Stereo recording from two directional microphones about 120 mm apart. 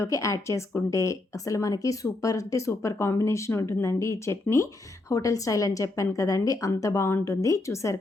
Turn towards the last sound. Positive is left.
turn(degrees=25)  # may be behind; listen again after turning